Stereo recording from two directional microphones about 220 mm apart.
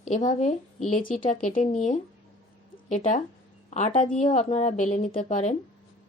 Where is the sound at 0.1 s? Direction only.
30° left (ahead or behind).